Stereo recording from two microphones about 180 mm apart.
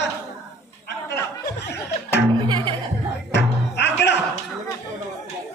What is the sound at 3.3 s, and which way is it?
Music, 70° left (ahead or behind).